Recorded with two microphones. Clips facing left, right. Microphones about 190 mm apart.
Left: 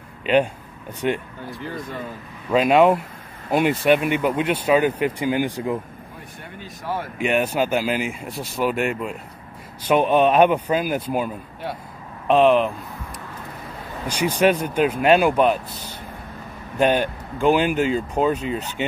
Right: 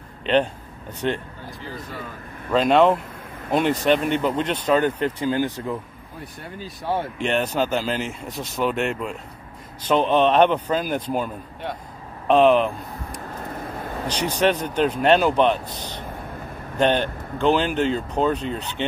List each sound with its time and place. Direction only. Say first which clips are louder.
1.0 s speech: left 2 dB; 10° left (ahead or behind)
2.5 s speech: left 1 dB; 10° left (ahead or behind)
6.6 s speech: right 3 dB; 30° right (ahead or behind)
7.2 s speech: left 4 dB; 10° left (ahead or behind)
14.0 s speech: left 3 dB; 10° left (ahead or behind)
16.7 s speech: left 1 dB; 10° left (ahead or behind)